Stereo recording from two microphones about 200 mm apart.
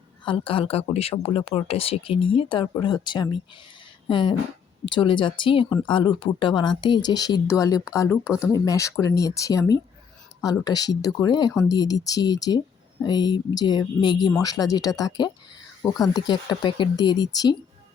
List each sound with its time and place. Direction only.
0.3 s speech: 25° left (ahead or behind)